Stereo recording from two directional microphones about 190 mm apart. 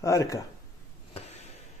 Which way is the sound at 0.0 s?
15° left (ahead or behind).